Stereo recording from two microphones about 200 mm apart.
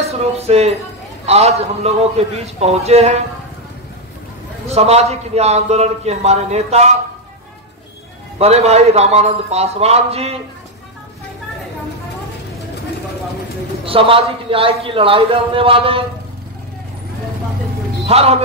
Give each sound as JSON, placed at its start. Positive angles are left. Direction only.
{"t": 0.2, "sound": "a man's voice", "side_deg": -30}
{"t": 4.6, "sound": "a man's voice", "side_deg": -30}
{"t": 8.4, "sound": "a man's voice", "side_deg": -30}
{"t": 13.8, "sound": "a man's voice", "side_deg": -25}
{"t": 18.0, "sound": "a man's voice", "side_deg": -30}